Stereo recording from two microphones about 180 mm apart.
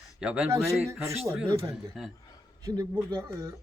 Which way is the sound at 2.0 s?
Centre (ahead or behind).